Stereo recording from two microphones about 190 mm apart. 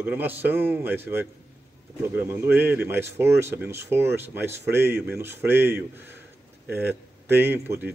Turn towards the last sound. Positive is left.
turn(degrees=-10)  # may be behind; listen again after turning